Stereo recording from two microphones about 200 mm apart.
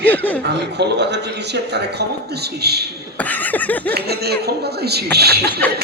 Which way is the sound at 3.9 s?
55° right (ahead or behind).